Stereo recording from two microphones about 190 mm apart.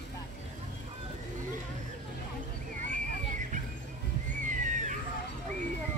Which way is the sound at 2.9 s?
40° right (ahead or behind).